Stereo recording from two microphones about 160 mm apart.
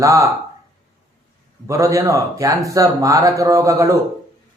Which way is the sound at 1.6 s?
20° right (ahead or behind).